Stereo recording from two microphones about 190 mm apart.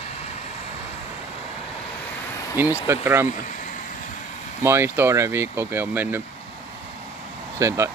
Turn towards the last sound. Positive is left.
turn(degrees=-15)  # may be behind; listen again after turning